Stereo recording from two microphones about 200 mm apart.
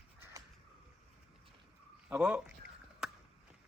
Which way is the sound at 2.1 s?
5° right (ahead or behind).